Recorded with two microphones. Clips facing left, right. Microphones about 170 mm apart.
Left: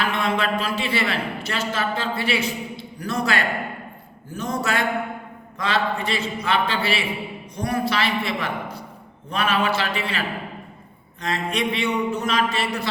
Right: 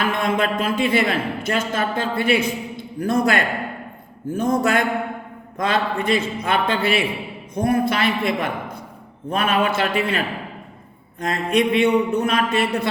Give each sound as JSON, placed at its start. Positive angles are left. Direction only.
{"t": 0.0, "sound": "a man's voice", "side_deg": -50}
{"t": 11.2, "sound": "mantra", "side_deg": -50}